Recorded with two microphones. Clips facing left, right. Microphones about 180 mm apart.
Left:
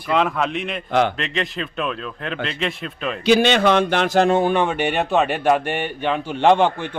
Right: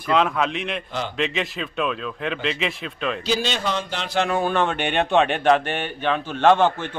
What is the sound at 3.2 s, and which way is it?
Speech, 65° left (ahead or behind).